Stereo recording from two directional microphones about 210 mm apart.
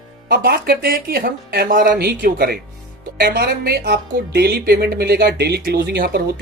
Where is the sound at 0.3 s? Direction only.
45° right (ahead or behind).